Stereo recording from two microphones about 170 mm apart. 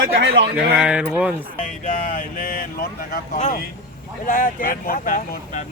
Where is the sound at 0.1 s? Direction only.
90° right.